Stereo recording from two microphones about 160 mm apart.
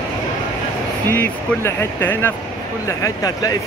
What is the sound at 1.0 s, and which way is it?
Speech, 15° left (ahead or behind).